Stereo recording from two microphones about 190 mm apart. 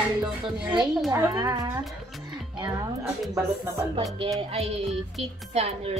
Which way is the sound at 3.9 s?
20° right (ahead or behind).